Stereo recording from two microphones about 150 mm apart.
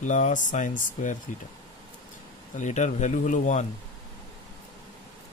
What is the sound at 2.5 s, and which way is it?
A man's voice, 55° left (ahead or behind).